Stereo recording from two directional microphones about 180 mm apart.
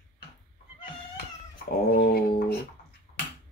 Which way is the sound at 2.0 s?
60° left (ahead or behind).